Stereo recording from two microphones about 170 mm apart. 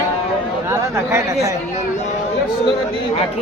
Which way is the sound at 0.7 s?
15° right (ahead or behind).